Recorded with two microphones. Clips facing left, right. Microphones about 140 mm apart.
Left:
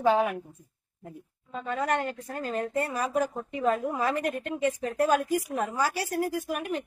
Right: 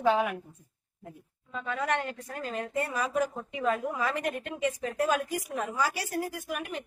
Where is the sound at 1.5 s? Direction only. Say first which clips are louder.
Left 2 dB; 40° left (ahead or behind).